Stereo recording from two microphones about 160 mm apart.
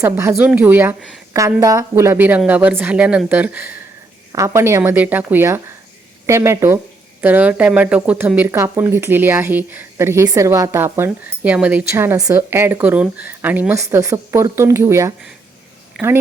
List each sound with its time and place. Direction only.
0.0 s speech: 15° right (ahead or behind)